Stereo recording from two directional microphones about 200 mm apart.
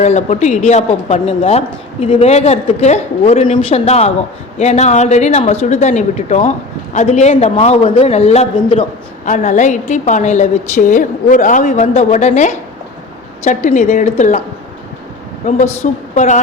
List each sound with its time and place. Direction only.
0.0 s speech: 35° left (ahead or behind)
15.4 s speech: 35° left (ahead or behind)